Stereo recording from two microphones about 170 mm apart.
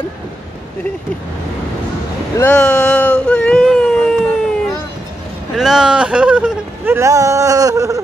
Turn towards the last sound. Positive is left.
turn(degrees=-20)  # may be behind; listen again after turning